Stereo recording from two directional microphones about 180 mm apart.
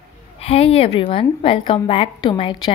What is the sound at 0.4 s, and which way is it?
A woman's voice, 35° left (ahead or behind).